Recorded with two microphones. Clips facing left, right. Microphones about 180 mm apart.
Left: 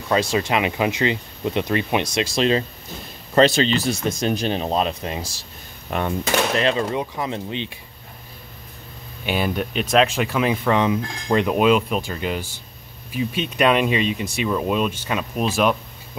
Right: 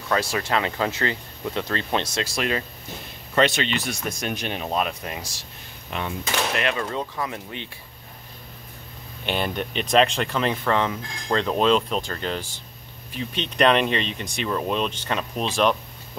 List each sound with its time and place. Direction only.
0.1 s speech: 20° left (ahead or behind)
5.9 s speech: 50° left (ahead or behind)
6.5 s speech: 30° left (ahead or behind)
9.2 s speech: 5° left (ahead or behind)